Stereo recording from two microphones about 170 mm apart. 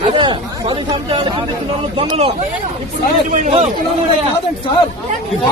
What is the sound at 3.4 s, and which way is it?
Speech, 40° right (ahead or behind).